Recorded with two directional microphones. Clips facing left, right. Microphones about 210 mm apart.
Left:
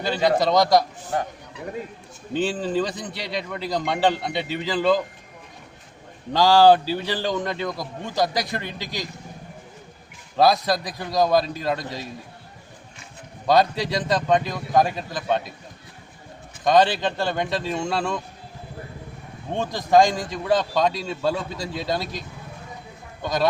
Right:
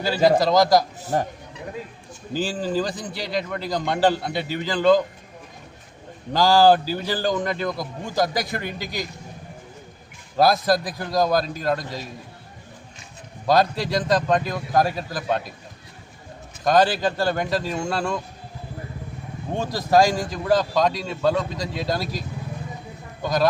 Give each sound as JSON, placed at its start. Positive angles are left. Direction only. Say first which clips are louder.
{"t": 0.0, "sound": "a man's voice", "louder": "right 2 dB", "side_deg": -5}
{"t": 2.3, "sound": "a man's voice", "louder": "left 1 dB", "side_deg": 0}
{"t": 6.3, "sound": "a man's voice", "louder": "left 1 dB", "side_deg": 0}
{"t": 10.3, "sound": "a man's voice", "louder": "right 1 dB", "side_deg": 0}
{"t": 13.5, "sound": "a man's voice", "louder": "even", "side_deg": 0}
{"t": 16.6, "sound": "a man's voice", "louder": "even", "side_deg": -5}
{"t": 19.5, "sound": "a man's voice", "louder": "left 1 dB", "side_deg": -10}
{"t": 23.2, "sound": "a man's voice", "louder": "right 2 dB", "side_deg": 0}